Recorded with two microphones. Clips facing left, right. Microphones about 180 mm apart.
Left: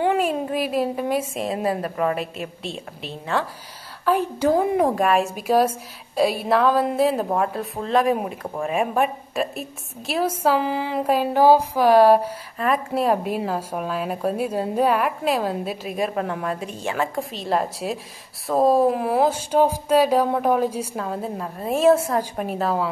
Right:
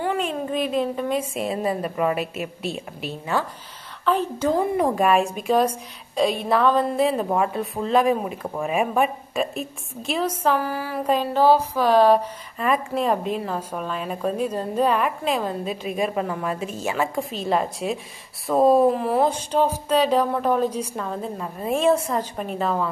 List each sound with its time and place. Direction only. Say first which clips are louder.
0.0 s a woman's voice: left 4 dB; 10° left (ahead or behind); by 3.4 s 5° right (ahead or behind)
4.0 s speech: left 2 dB; 10° left (ahead or behind)
4.6 s a woman's voice: left 1 dB; centre (ahead or behind)
10.6 s a sound: left 3 dB; 20° left (ahead or behind)
11.1 s speech: left 2 dB; 10° left (ahead or behind)
12.5 s a woman's voice: even; centre (ahead or behind)